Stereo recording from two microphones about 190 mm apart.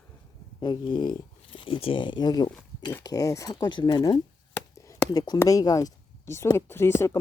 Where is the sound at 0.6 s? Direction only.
25° left (ahead or behind).